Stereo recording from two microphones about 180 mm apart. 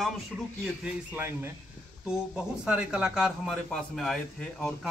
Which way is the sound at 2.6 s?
5° right (ahead or behind).